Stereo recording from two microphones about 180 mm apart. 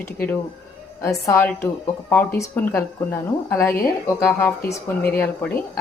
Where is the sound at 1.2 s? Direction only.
15° left (ahead or behind).